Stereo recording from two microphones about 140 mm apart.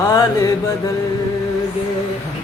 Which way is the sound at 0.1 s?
25° left (ahead or behind).